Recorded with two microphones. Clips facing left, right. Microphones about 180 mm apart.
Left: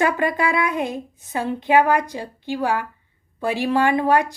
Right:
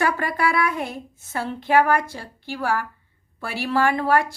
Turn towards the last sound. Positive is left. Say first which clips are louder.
# left 2 dB
turn(degrees=20)  # may be behind; listen again after turning